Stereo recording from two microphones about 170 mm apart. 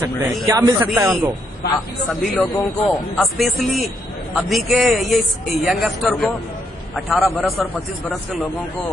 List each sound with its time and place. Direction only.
0.5 s speech: 20° right (ahead or behind)
2.2 s a man's voice: 5° left (ahead or behind)